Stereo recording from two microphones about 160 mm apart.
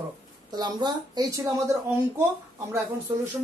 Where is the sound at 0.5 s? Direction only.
25° right (ahead or behind).